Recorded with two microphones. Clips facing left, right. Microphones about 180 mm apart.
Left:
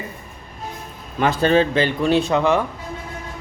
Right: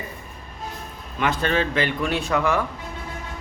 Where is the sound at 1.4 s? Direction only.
30° left (ahead or behind).